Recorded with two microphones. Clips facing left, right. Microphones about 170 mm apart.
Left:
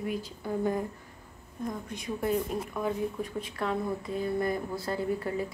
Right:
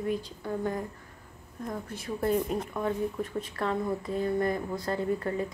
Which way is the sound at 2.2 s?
5° left (ahead or behind).